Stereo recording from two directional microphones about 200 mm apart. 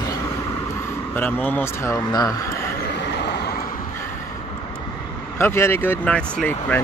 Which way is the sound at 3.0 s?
55° left (ahead or behind).